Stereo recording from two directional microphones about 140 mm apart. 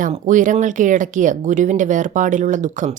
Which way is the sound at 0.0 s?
65° right (ahead or behind).